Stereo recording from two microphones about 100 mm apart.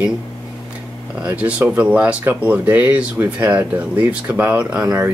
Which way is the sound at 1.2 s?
20° right (ahead or behind).